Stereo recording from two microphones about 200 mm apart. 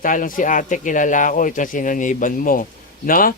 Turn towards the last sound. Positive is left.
turn(degrees=45)  # may be behind; listen again after turning